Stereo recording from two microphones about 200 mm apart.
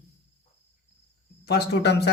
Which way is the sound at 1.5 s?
55° left (ahead or behind).